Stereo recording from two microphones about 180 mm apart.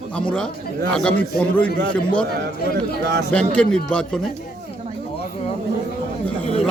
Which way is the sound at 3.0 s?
70° right (ahead or behind).